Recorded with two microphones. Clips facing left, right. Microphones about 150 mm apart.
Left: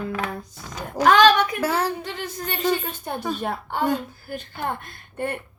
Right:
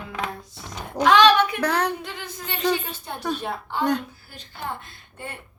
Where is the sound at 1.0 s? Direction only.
5° left (ahead or behind).